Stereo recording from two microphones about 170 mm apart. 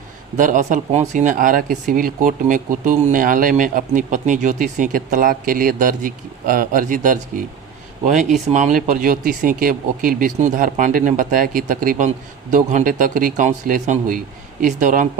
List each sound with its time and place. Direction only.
0.3 s speech: 50° right (ahead or behind)